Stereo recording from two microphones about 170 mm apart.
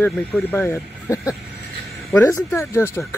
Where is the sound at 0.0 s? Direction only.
10° left (ahead or behind).